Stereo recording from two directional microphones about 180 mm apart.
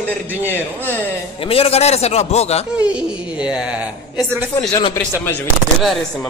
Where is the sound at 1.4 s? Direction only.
30° left (ahead or behind).